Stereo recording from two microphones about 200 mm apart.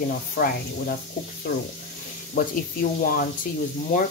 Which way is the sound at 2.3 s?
45° left (ahead or behind).